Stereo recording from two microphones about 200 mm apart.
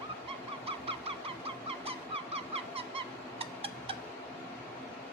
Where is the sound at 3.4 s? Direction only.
30° right (ahead or behind).